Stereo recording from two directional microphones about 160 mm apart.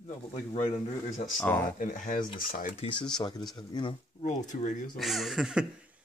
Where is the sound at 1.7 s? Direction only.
55° left (ahead or behind).